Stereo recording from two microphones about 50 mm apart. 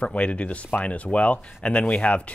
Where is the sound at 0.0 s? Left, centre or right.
Left.